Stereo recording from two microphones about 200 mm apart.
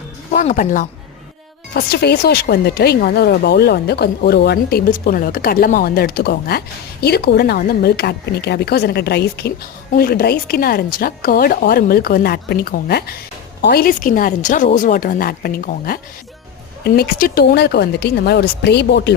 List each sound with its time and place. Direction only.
0.3 s speech: 35° left (ahead or behind)
1.7 s speech: 55° left (ahead or behind)